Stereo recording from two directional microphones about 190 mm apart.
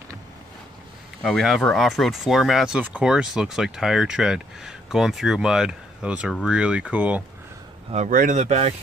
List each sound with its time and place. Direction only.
1.2 s speech: centre (ahead or behind)
7.9 s speech: 40° right (ahead or behind)